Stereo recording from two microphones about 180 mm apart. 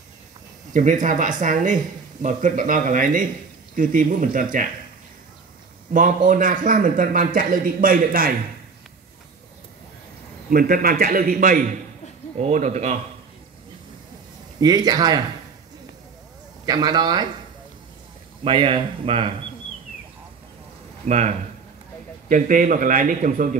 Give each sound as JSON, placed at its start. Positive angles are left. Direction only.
{"t": 0.7, "sound": "a man's voice", "side_deg": -45}
{"t": 5.9, "sound": "a man's voice", "side_deg": -50}
{"t": 10.5, "sound": "a man's voice", "side_deg": -55}
{"t": 14.6, "sound": "speech", "side_deg": -20}
{"t": 16.6, "sound": "speech", "side_deg": -20}
{"t": 18.4, "sound": "speech", "side_deg": -30}
{"t": 21.1, "sound": "a man's voice", "side_deg": -40}